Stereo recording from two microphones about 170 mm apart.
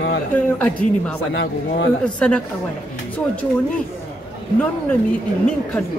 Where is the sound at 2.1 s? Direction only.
5° left (ahead or behind).